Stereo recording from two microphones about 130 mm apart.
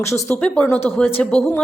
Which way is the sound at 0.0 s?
20° left (ahead or behind).